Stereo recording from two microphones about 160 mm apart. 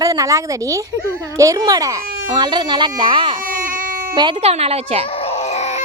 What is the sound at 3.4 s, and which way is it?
Baby cry, 60° right (ahead or behind).